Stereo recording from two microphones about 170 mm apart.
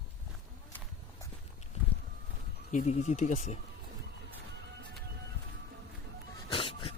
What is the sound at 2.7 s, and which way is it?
Speech, 45° left (ahead or behind).